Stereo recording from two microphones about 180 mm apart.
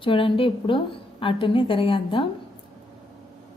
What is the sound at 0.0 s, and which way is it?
A woman's voice, 30° left (ahead or behind).